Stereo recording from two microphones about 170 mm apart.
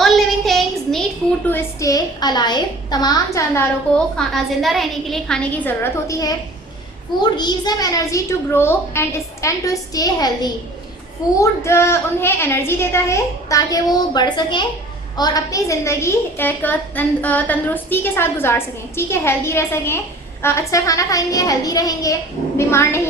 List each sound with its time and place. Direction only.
0.0 s child singing: centre (ahead or behind)
1.5 s a child's voice: 15° left (ahead or behind)
4.4 s a woman's voice: centre (ahead or behind); by 23.0 s 15° left (ahead or behind)